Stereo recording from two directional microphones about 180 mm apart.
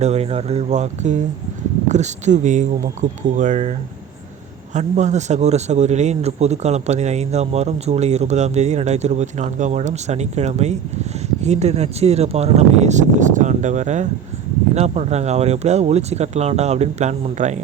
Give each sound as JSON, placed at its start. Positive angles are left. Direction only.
{"t": 0.0, "sound": "a man's voice", "side_deg": -35}